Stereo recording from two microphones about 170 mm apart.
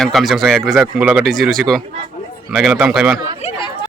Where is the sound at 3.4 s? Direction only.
35° left (ahead or behind).